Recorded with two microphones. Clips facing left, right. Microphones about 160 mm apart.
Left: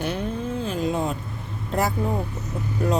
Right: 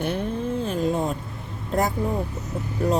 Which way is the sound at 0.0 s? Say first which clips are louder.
Right 1 dB; 55° right (ahead or behind).